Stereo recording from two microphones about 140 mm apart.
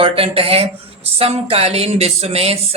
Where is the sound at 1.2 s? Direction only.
45° right (ahead or behind).